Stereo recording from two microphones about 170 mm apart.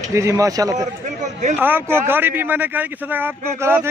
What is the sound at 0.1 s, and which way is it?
A man's voice, 15° right (ahead or behind).